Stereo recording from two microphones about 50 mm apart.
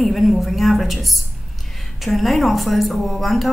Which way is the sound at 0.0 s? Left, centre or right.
Centre.